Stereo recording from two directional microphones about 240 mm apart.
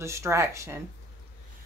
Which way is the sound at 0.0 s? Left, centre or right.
Centre.